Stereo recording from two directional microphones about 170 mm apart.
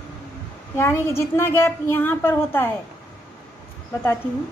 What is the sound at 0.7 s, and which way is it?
A woman's voice, 15° left (ahead or behind).